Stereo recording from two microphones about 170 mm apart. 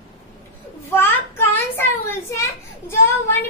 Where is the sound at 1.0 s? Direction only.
10° left (ahead or behind).